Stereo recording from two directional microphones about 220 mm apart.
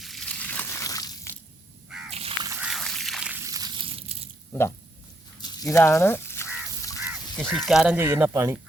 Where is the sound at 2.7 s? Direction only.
Centre (ahead or behind).